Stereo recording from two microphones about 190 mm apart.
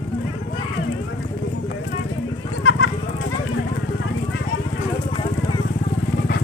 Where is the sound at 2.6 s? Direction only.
80° left.